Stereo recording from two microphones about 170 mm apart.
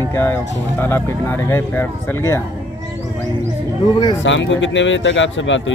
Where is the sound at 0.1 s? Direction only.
15° left (ahead or behind).